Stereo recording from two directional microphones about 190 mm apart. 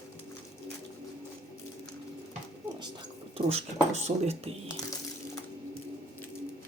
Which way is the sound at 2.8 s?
25° right (ahead or behind).